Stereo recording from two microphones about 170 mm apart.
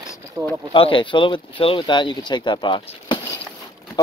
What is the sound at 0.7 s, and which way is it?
Speech, 30° left (ahead or behind).